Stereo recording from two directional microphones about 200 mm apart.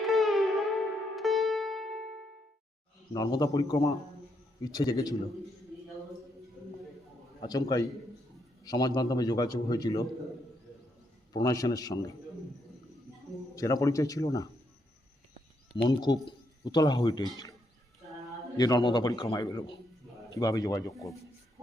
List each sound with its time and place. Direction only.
0.0 s music: centre (ahead or behind)
3.1 s a man's voice: 20° left (ahead or behind)
7.4 s a man's voice: 20° left (ahead or behind)
11.3 s a man's voice: 15° left (ahead or behind)
13.6 s a man's voice: 15° left (ahead or behind)
15.7 s a man's voice: 20° left (ahead or behind)
18.5 s a man's voice: 20° left (ahead or behind)